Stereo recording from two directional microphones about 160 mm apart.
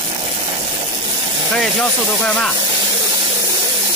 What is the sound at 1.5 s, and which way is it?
Speech, 5° left (ahead or behind).